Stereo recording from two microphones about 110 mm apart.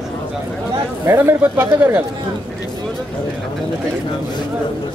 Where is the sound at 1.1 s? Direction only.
25° right (ahead or behind).